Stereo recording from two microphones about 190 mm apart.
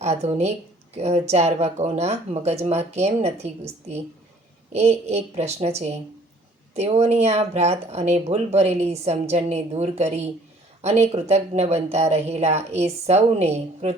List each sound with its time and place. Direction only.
0.0 s speech: 35° right (ahead or behind)